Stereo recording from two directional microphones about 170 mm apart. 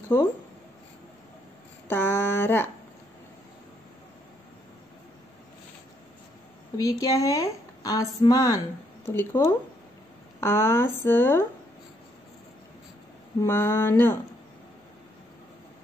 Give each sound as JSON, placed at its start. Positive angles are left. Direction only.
{"t": 1.9, "sound": "speech", "side_deg": 15}
{"t": 6.8, "sound": "a woman's voice", "side_deg": 20}
{"t": 13.4, "sound": "speech", "side_deg": 15}